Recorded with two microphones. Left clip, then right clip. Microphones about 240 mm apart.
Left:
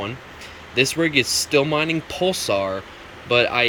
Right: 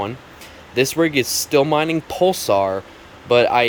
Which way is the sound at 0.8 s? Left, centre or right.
Centre.